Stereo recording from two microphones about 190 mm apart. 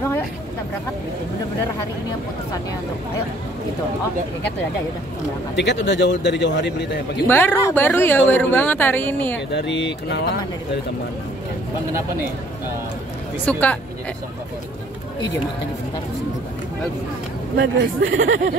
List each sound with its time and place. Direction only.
5.6 s a man's voice: 70° left (ahead or behind)
7.2 s a woman's voice: 10° left (ahead or behind)
9.5 s speech: 65° left (ahead or behind)
13.5 s a woman's voice: 10° left (ahead or behind)
17.6 s speech: 90° right